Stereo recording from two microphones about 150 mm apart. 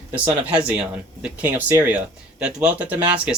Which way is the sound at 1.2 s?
10° right (ahead or behind).